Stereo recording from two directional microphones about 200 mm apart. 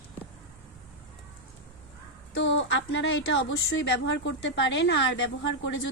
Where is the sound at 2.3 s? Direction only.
65° left (ahead or behind).